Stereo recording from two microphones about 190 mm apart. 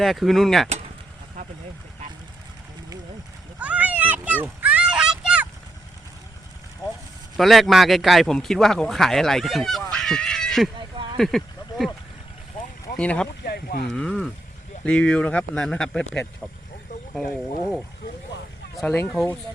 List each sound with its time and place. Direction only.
0.0 s speech: centre (ahead or behind)
3.6 s a sound: 5° right (ahead or behind)
7.3 s speech: centre (ahead or behind)
10.8 s a sound: 25° right (ahead or behind)
11.2 s a sound: centre (ahead or behind)
13.0 s speech: 5° left (ahead or behind)
13.4 s boat: 55° left (ahead or behind)
13.9 s speech: 5° left (ahead or behind)
18.8 s speech: 5° left (ahead or behind)